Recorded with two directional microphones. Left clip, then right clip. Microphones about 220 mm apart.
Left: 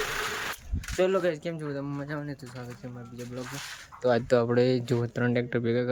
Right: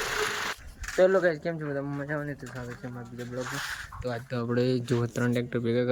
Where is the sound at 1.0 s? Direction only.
5° right (ahead or behind).